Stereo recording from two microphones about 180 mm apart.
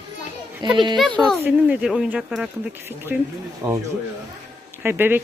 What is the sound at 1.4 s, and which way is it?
Speech, 10° right (ahead or behind).